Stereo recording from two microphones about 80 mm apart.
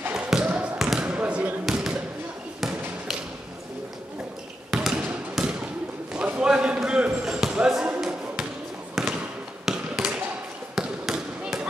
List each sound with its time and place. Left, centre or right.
0.1 s basketball bounce: centre
1.0 s basketball bounce: centre
4.6 s basketball bounce: centre